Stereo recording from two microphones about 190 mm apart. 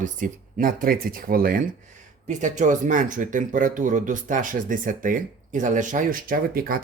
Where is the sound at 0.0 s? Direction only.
45° right (ahead or behind).